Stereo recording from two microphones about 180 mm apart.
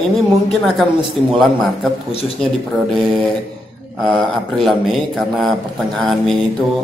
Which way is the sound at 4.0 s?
Centre (ahead or behind).